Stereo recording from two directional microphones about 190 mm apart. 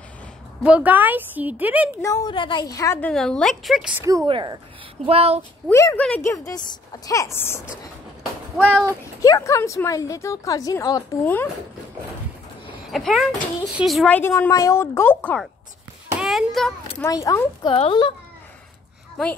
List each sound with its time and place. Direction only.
0.7 s a woman's voice: 5° right (ahead or behind)
2.0 s a woman's voice: 15° left (ahead or behind)
3.1 s a woman's voice: 5° left (ahead or behind)
4.3 s speech: 25° right (ahead or behind)
5.0 s child singing: 30° right (ahead or behind)
5.7 s a woman's voice: 15° left (ahead or behind)
12.9 s a woman's voice: centre (ahead or behind)
16.1 s a sound: 5° right (ahead or behind)
17.0 s a woman's voice: 15° left (ahead or behind)
17.7 s a child's voice: 30° left (ahead or behind)